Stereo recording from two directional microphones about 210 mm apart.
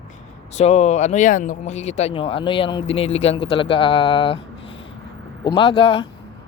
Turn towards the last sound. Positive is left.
turn(degrees=25)  # may be behind; listen again after turning